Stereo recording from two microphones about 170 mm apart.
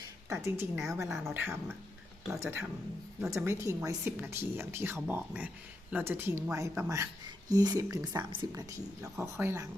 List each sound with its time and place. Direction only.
0.3 s speech: 15° right (ahead or behind)
9.1 s speech: 15° right (ahead or behind)